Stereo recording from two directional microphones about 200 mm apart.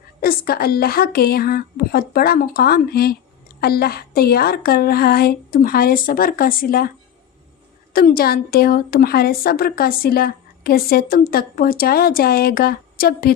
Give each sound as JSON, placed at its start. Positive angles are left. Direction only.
{"t": 0.2, "sound": "a woman's voice", "side_deg": 50}
{"t": 7.9, "sound": "a woman's voice", "side_deg": 45}